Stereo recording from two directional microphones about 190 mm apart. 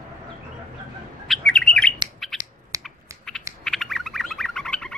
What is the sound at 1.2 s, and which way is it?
Bird, centre (ahead or behind).